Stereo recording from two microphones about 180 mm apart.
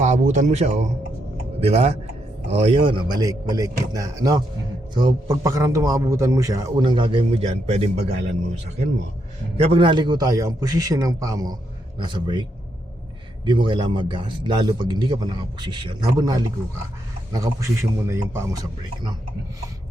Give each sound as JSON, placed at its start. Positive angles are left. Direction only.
{"t": 0.0, "sound": "a man's voice", "side_deg": -40}
{"t": 9.6, "sound": "a man's voice", "side_deg": -30}